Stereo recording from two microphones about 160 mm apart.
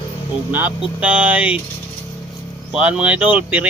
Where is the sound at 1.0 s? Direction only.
10° right (ahead or behind).